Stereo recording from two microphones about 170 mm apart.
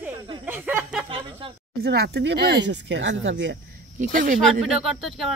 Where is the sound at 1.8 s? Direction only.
75° right (ahead or behind); by 3.6 s 90° right.